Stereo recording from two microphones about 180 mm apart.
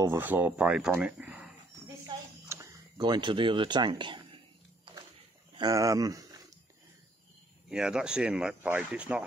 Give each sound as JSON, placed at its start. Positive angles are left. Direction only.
{"t": 0.0, "sound": "speech", "side_deg": -10}
{"t": 2.0, "sound": "a sound", "side_deg": -15}
{"t": 5.5, "sound": "speech", "side_deg": -20}
{"t": 7.7, "sound": "speech", "side_deg": -5}